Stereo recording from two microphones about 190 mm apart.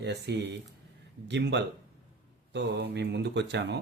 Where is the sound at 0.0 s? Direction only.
65° right (ahead or behind).